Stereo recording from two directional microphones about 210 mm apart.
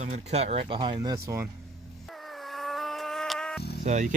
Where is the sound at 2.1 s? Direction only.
Centre (ahead or behind).